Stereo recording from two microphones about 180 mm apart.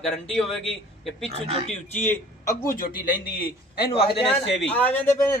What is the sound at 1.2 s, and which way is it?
Speech, 35° right (ahead or behind).